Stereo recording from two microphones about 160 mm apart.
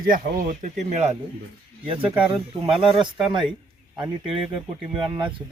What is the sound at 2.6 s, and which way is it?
Speech, 30° right (ahead or behind).